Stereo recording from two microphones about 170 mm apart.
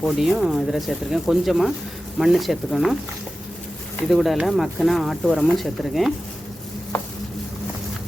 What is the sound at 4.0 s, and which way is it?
Speech, centre (ahead or behind).